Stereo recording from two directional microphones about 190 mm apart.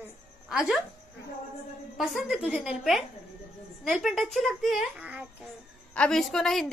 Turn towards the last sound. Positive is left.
turn(degrees=0)  # may be behind; listen again after turning